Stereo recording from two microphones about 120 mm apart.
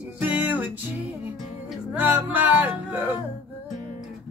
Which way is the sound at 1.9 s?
15° right (ahead or behind).